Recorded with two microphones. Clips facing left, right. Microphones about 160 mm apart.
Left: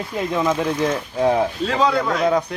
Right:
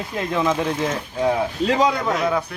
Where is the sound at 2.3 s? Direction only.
35° left (ahead or behind).